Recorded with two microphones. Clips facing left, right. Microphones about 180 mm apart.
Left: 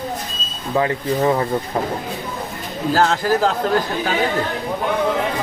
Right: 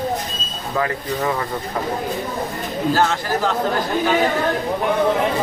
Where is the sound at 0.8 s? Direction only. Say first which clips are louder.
Left 4 dB; 25° left (ahead or behind).